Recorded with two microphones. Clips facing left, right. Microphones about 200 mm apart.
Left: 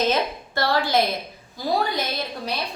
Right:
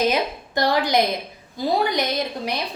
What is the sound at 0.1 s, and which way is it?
A woman's voice, 15° right (ahead or behind).